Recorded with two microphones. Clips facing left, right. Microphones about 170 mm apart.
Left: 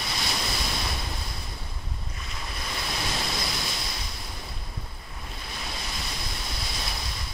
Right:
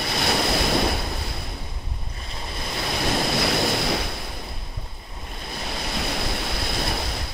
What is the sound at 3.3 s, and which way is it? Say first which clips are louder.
Waves: right 11 dB; 70° right (ahead or behind).